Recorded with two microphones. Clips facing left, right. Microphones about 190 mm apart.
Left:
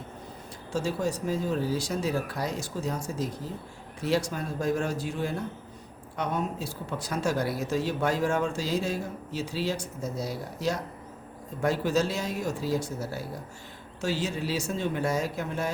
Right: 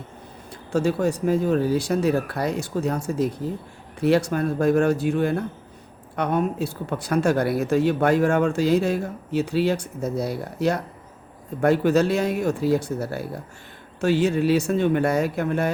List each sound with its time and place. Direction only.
0.7 s speech: 60° right (ahead or behind)